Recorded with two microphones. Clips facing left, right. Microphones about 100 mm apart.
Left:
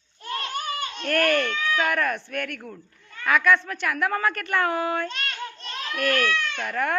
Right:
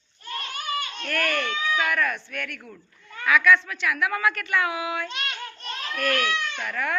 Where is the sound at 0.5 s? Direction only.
40° left (ahead or behind).